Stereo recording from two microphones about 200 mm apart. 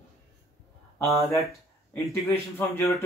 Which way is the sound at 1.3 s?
Centre (ahead or behind).